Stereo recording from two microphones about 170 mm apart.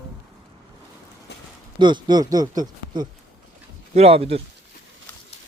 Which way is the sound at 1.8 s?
25° right (ahead or behind).